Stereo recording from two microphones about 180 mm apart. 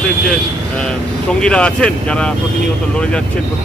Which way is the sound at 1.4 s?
5° left (ahead or behind).